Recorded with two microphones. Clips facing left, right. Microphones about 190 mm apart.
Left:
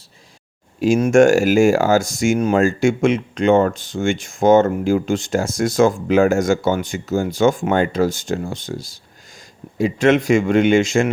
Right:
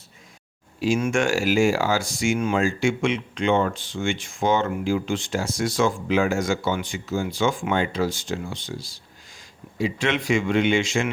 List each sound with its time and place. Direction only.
0.8 s speech: 40° left (ahead or behind)